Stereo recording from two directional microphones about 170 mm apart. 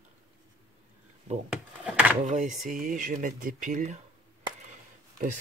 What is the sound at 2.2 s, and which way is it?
Speech, 45° right (ahead or behind).